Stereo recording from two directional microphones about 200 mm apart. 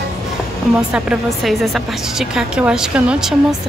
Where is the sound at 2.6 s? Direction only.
5° right (ahead or behind).